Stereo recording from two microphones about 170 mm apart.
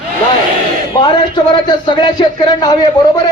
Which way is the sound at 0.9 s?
25° left (ahead or behind).